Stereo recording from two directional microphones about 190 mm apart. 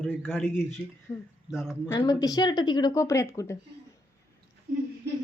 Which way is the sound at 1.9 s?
20° left (ahead or behind).